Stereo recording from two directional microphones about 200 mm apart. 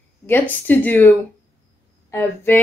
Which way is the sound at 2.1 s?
10° left (ahead or behind).